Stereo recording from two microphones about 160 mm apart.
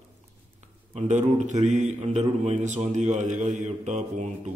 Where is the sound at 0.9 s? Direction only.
50° right (ahead or behind).